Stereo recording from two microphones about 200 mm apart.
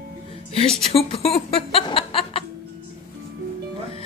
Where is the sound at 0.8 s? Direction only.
30° left (ahead or behind).